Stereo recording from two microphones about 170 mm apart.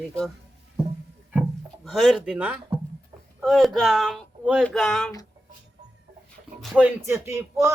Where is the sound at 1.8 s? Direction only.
Centre (ahead or behind).